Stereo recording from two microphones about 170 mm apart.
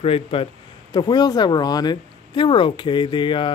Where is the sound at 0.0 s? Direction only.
35° left (ahead or behind).